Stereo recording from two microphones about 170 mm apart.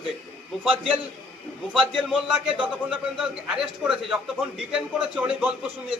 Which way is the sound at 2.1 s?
5° right (ahead or behind).